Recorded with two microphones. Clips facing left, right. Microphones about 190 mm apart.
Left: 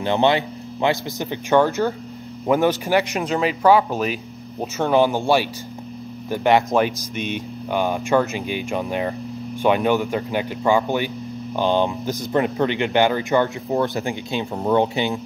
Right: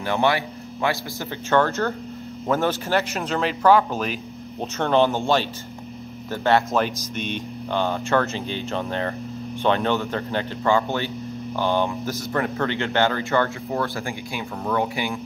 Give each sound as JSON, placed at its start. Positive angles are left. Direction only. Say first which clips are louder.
{"t": 0.0, "sound": "speech", "louder": "left 3 dB", "side_deg": 20}